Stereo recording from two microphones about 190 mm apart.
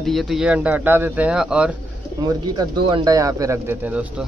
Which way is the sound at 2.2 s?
20° right (ahead or behind).